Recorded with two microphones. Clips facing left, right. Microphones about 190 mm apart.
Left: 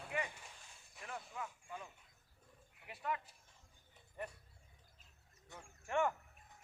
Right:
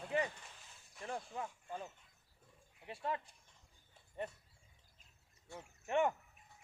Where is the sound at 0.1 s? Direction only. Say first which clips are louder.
Right 5 dB; 35° right (ahead or behind).